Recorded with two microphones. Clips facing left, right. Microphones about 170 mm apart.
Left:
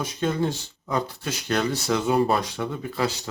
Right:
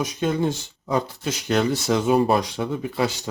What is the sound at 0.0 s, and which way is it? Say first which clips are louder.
Speech: right 2 dB; 15° right (ahead or behind).